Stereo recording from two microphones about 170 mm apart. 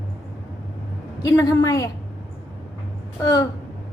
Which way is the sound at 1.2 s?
20° left (ahead or behind).